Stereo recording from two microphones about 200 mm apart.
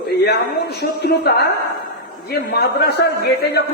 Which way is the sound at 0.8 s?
55° left (ahead or behind).